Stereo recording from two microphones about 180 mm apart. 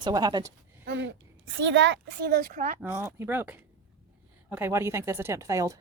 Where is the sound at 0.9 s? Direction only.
80° right; by 2.8 s 45° right (ahead or behind).